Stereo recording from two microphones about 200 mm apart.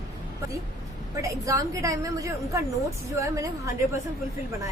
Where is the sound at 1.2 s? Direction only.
15° right (ahead or behind).